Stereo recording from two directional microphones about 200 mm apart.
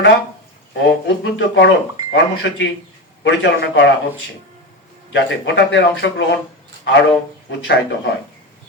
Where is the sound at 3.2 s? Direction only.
65° left (ahead or behind).